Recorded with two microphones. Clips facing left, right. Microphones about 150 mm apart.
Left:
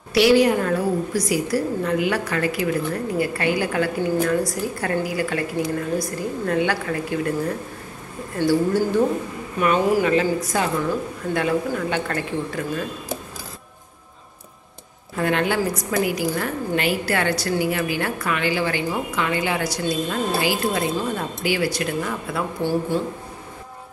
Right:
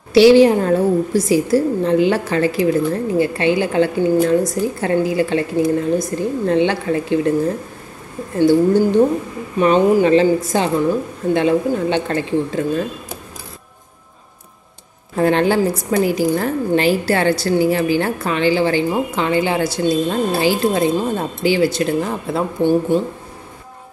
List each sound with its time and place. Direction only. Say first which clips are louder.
0.1 s a woman's voice: right 7 dB; 25° right (ahead or behind)
15.1 s a woman's voice: right 6 dB; 30° right (ahead or behind)